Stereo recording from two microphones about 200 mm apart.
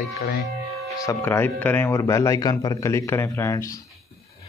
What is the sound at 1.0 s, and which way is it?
Speech, 10° left (ahead or behind).